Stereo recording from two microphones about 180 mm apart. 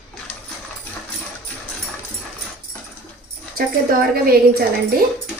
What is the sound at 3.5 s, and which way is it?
A woman's voice, 55° right (ahead or behind).